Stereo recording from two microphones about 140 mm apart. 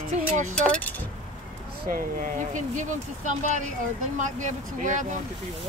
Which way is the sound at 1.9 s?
70° right (ahead or behind).